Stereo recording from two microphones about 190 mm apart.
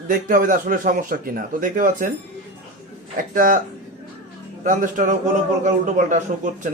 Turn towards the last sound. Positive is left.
turn(degrees=-40)  # may be behind; listen again after turning